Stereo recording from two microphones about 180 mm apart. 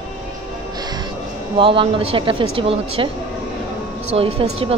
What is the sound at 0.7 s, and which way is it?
Music, 20° right (ahead or behind).